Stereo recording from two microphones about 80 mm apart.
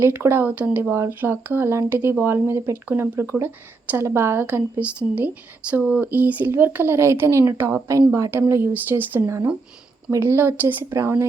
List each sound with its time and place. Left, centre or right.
0.0 s speech: right
4.4 s a woman's voice: centre
10.8 s a woman's voice: right